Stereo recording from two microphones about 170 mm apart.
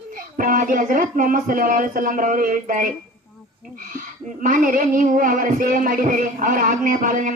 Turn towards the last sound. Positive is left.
turn(degrees=-50)  # may be behind; listen again after turning